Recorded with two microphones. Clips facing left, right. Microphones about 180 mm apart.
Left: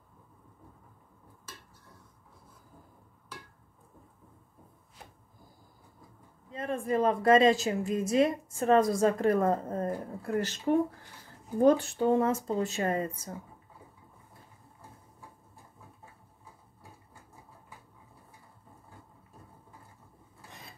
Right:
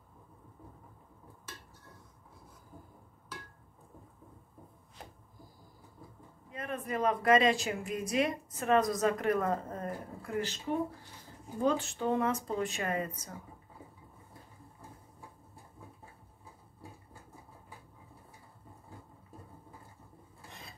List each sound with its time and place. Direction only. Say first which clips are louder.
6.5 s a woman's voice: left 7 dB; 30° left (ahead or behind)
10.7 s speech: left 9 dB; 50° left (ahead or behind)
11.6 s a woman's voice: left 7 dB; 30° left (ahead or behind)